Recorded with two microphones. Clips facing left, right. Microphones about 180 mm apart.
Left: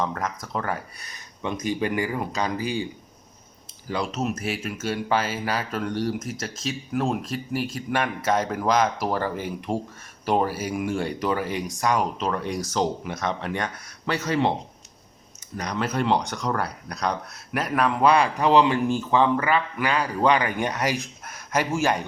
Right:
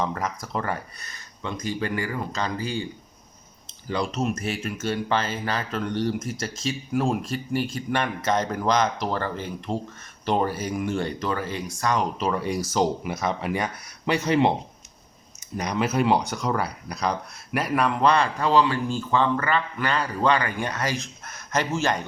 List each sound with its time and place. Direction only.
0.0 s speech: centre (ahead or behind)
0.9 s speech: 15° left (ahead or behind)
3.8 s speech: 5° left (ahead or behind)
12.1 s speech: 5° right (ahead or behind)
15.5 s speech: 10° right (ahead or behind); by 22.0 s 10° left (ahead or behind)